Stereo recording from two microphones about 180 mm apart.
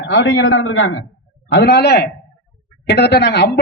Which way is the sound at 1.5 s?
65° left (ahead or behind).